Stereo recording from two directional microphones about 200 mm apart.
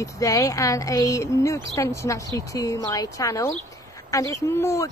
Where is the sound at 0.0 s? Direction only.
15° left (ahead or behind).